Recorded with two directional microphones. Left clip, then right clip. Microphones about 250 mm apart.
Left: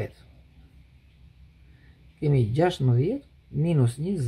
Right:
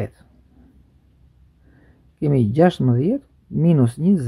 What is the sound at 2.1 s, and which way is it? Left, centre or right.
Speech, right.